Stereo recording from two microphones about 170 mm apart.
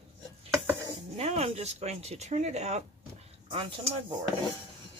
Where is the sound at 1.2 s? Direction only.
35° right (ahead or behind).